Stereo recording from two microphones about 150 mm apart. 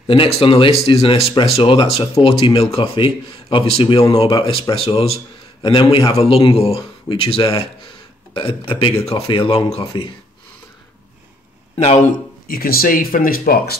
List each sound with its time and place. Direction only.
0.0 s speech: 35° left (ahead or behind)
12.4 s speech: 80° left